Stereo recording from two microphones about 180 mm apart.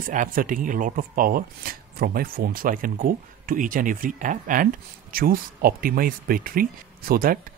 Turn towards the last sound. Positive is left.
turn(degrees=-55)  # may be behind; listen again after turning